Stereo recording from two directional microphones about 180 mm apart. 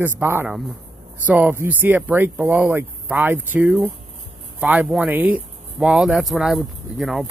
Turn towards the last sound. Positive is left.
turn(degrees=0)  # may be behind; listen again after turning